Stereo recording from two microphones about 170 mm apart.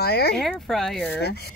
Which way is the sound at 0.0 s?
70° left (ahead or behind).